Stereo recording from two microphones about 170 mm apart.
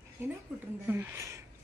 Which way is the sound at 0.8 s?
10° right (ahead or behind).